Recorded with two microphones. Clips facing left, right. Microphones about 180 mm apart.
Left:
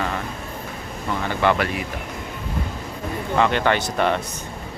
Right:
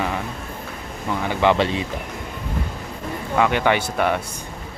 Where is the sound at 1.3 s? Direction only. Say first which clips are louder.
Right 2 dB; 15° right (ahead or behind).